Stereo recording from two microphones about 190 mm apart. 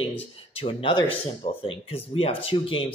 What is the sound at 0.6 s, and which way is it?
Speech, 30° left (ahead or behind).